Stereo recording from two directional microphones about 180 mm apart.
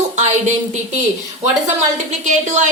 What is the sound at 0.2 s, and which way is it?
A woman's voice, 40° right (ahead or behind).